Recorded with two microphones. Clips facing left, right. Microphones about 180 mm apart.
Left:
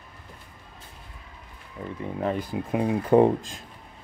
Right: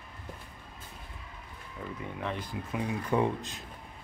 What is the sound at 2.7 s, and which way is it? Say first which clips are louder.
Speech: left 10 dB; 55° left (ahead or behind).